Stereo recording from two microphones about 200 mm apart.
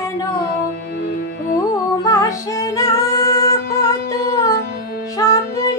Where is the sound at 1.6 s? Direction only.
15° left (ahead or behind).